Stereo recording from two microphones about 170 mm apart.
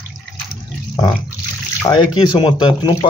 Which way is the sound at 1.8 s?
25° left (ahead or behind).